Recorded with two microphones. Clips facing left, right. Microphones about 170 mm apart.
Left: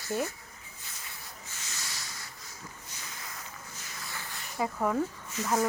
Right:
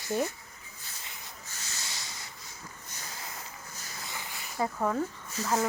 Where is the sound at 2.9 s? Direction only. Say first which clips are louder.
Right 2 dB; 40° right (ahead or behind).